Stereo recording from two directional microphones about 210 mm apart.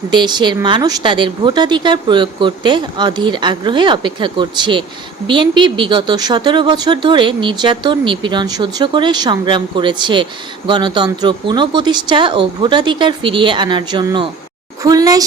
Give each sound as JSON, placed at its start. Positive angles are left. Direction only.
{"t": 0.1, "sound": "a woman's voice", "side_deg": -20}